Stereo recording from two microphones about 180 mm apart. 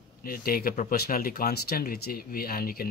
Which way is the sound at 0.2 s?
55° left (ahead or behind).